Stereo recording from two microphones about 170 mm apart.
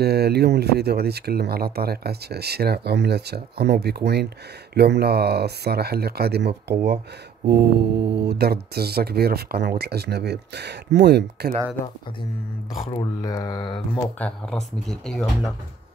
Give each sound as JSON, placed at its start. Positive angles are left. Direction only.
{"t": 0.0, "sound": "speech", "side_deg": -70}
{"t": 13.2, "sound": "speech", "side_deg": 25}
{"t": 14.1, "sound": "speech", "side_deg": 5}